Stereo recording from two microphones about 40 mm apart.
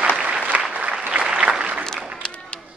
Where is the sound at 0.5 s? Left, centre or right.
Right.